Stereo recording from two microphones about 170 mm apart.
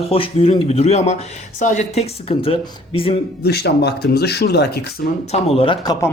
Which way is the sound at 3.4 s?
75° left (ahead or behind).